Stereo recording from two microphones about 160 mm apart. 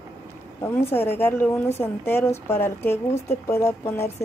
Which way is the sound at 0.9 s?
15° left (ahead or behind).